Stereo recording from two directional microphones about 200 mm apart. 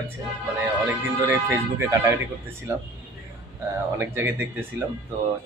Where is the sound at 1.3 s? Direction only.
10° right (ahead or behind).